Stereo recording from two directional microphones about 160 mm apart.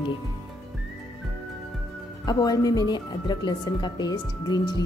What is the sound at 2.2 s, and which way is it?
A woman's voice, 25° left (ahead or behind).